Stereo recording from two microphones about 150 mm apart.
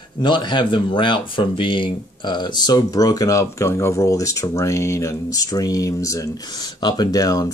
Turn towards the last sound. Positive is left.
turn(degrees=25)  # may be behind; listen again after turning